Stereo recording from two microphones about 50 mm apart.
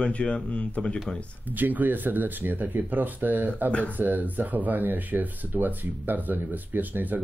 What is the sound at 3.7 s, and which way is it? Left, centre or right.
Speech, left.